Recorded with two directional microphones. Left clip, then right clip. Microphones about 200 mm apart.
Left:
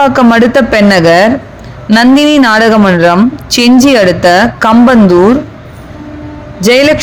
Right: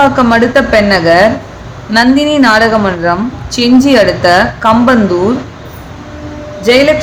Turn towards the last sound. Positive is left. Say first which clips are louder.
# left 1 dB
turn(degrees=35)  # may be behind; listen again after turning